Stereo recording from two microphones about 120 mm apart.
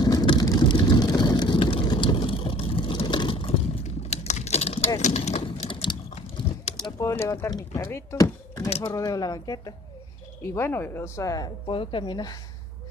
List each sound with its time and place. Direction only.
0.0 s vehicle: 35° left (ahead or behind)
3.8 s typing: 65° left (ahead or behind)
5.7 s a sound: 40° left (ahead or behind)
6.0 s typing: 60° left (ahead or behind)
6.8 s speech: 25° left (ahead or behind)
11.6 s a woman's voice: 45° left (ahead or behind)